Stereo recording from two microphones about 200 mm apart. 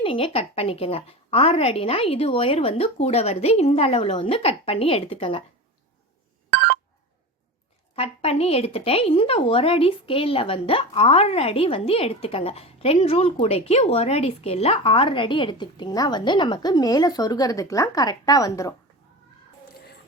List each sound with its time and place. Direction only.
0.0 s a woman's voice: 25° left (ahead or behind)
7.9 s a woman's voice: 30° left (ahead or behind)